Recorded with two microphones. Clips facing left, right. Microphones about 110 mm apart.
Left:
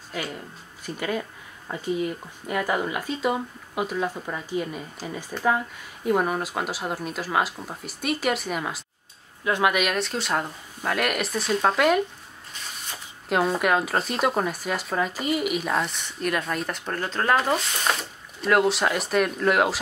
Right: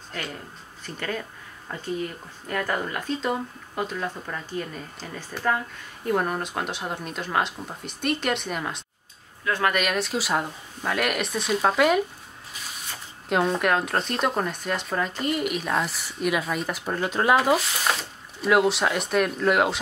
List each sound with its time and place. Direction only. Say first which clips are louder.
0.1 s speech: left 2 dB; 5° left (ahead or behind)
9.4 s speech: left 2 dB; 20° left (ahead or behind)
9.7 s speech: left 1 dB; centre (ahead or behind)
13.3 s speech: even; centre (ahead or behind)